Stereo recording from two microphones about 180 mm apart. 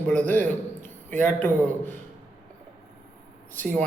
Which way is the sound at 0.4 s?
45° right (ahead or behind).